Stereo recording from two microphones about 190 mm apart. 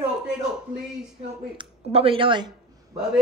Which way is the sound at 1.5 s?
30° right (ahead or behind).